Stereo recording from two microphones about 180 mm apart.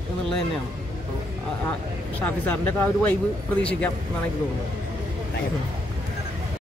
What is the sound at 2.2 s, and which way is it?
Speech, 10° left (ahead or behind).